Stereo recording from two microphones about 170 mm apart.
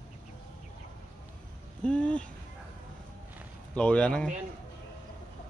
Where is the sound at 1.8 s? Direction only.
5° left (ahead or behind).